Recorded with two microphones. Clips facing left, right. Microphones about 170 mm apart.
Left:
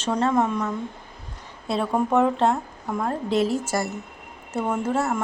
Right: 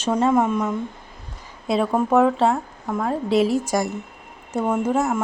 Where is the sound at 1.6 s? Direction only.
Centre (ahead or behind).